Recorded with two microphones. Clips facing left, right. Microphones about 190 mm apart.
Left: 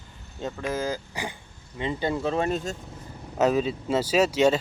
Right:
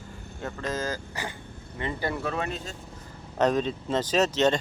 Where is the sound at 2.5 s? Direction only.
45° left (ahead or behind).